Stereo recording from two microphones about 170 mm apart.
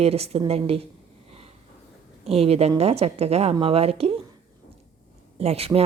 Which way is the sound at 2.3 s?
35° right (ahead or behind).